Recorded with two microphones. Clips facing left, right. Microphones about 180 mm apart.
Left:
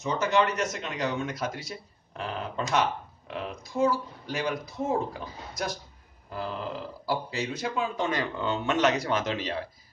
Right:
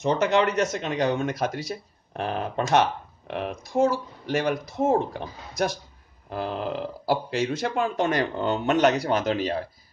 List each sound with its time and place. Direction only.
0.0 s speech: 65° right (ahead or behind)
4.3 s speech: 75° right (ahead or behind)
6.3 s speech: 70° right (ahead or behind)
8.2 s speech: 40° right (ahead or behind)